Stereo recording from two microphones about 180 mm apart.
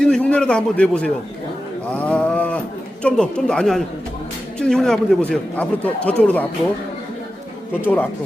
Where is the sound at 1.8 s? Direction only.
5° left (ahead or behind).